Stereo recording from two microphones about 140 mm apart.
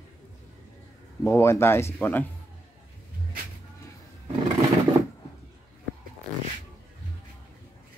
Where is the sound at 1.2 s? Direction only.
20° left (ahead or behind).